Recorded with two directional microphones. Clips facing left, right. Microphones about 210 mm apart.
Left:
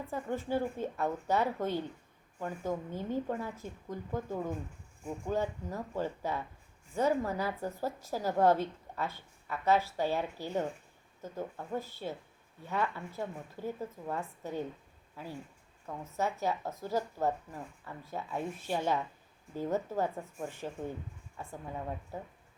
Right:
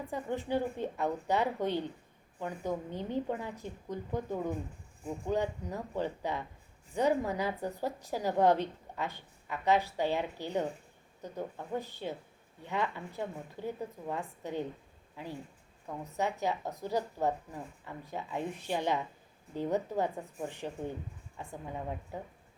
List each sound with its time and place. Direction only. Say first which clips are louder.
0.1 s a woman's voice: even; 15° right (ahead or behind)